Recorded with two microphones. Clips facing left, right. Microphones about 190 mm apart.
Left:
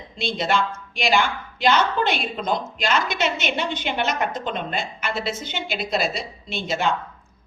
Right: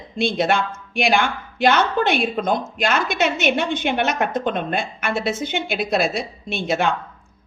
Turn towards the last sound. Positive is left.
turn(degrees=-55)  # may be behind; listen again after turning